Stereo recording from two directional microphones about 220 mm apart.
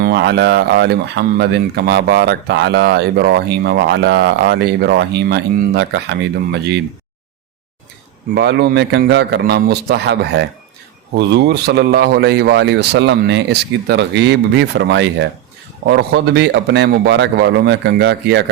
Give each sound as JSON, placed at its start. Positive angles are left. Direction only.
{"t": 0.0, "sound": "speech", "side_deg": -50}
{"t": 8.4, "sound": "speech", "side_deg": -50}